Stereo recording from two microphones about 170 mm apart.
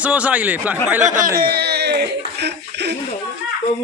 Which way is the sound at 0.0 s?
10° right (ahead or behind).